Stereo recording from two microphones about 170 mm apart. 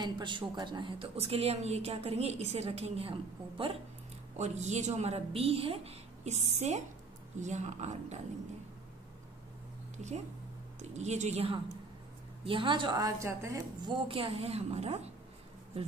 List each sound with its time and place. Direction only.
0.0 s a woman's voice: 25° right (ahead or behind)
4.4 s a woman's voice: 40° right (ahead or behind)
10.8 s a woman's voice: 40° right (ahead or behind); by 13.9 s 15° right (ahead or behind)
14.0 s a woman's voice: 30° right (ahead or behind)